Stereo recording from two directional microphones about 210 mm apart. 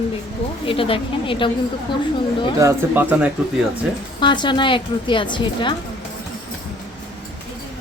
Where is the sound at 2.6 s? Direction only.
10° right (ahead or behind).